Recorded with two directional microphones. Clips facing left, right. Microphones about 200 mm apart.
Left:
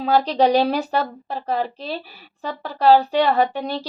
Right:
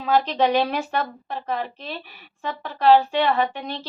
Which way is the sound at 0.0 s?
35° left (ahead or behind).